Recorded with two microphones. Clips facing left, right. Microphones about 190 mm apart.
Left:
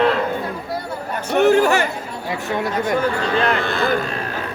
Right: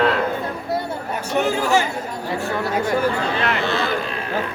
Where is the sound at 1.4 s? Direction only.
65° left (ahead or behind).